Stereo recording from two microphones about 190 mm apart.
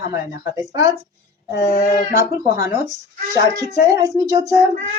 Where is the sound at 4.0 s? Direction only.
20° right (ahead or behind).